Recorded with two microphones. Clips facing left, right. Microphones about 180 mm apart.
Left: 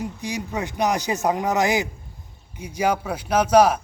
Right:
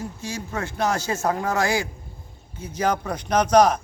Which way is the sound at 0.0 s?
15° left (ahead or behind).